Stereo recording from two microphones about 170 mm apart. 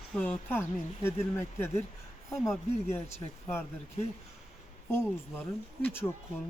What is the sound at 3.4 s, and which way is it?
Speech, 10° left (ahead or behind).